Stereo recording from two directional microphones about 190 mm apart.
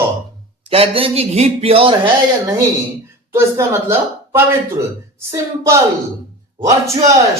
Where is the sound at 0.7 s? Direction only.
30° right (ahead or behind).